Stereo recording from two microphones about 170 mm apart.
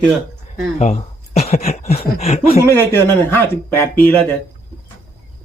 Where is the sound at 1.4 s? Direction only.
40° left (ahead or behind).